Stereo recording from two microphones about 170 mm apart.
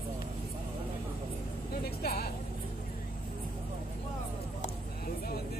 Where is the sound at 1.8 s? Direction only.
65° left (ahead or behind).